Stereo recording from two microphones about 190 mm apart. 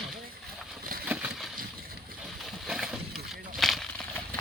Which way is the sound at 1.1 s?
10° right (ahead or behind).